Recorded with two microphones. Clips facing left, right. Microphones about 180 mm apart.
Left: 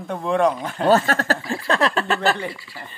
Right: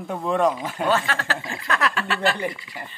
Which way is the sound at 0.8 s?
40° left (ahead or behind).